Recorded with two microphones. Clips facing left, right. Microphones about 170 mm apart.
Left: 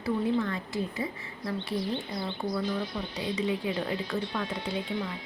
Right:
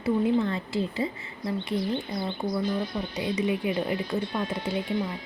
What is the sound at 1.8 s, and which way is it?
Speech, 50° right (ahead or behind).